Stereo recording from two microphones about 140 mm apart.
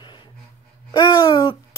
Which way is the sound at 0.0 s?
35° left (ahead or behind).